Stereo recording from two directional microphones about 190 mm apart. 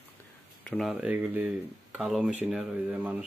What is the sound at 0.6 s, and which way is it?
Speech, centre (ahead or behind).